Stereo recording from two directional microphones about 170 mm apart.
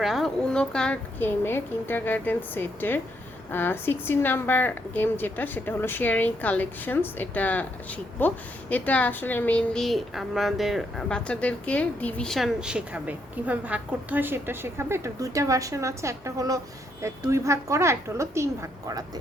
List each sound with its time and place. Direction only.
0.0 s a woman's voice: centre (ahead or behind); by 19.2 s 20° right (ahead or behind)